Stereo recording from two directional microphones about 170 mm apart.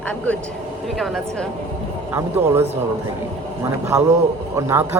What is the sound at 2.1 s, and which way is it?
Speech, 10° right (ahead or behind).